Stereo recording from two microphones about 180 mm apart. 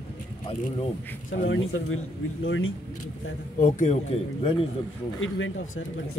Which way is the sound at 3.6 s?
45° left (ahead or behind).